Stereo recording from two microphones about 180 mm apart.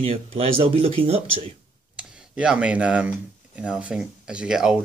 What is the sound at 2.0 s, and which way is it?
Speech, 5° right (ahead or behind).